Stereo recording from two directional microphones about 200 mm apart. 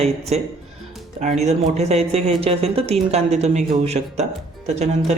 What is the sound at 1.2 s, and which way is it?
Speech, 35° right (ahead or behind).